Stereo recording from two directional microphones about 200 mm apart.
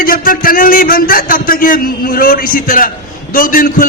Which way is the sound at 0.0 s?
45° left (ahead or behind).